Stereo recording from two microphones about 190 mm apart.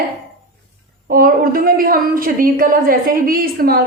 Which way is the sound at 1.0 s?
50° right (ahead or behind).